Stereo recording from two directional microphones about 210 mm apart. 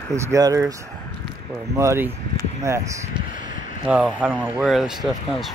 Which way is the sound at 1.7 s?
10° right (ahead or behind).